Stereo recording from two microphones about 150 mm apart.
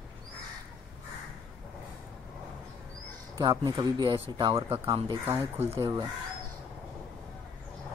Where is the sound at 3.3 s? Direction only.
25° right (ahead or behind).